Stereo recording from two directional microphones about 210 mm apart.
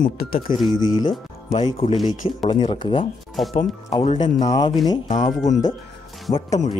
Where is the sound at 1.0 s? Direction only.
30° left (ahead or behind).